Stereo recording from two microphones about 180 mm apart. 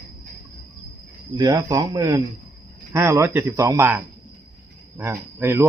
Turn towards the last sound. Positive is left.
turn(degrees=-15)  # may be behind; listen again after turning